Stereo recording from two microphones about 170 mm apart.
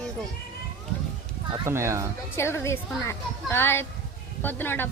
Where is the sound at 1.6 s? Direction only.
15° right (ahead or behind).